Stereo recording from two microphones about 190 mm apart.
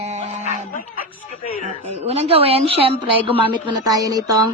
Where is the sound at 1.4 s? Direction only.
35° left (ahead or behind).